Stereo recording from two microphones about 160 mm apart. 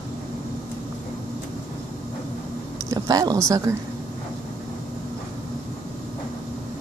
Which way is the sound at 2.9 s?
25° right (ahead or behind).